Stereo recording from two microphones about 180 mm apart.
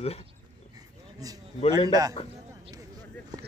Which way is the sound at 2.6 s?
20° right (ahead or behind).